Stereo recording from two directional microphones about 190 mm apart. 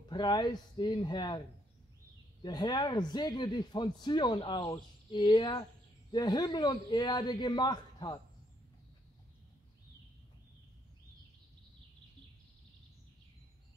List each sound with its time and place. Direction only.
0.1 s speech: 20° left (ahead or behind)
2.4 s speech: 20° left (ahead or behind)